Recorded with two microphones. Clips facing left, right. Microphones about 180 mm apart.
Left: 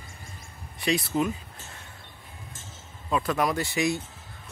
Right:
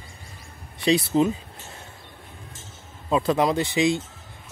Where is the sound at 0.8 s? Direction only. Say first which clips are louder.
Right 6 dB; 30° right (ahead or behind).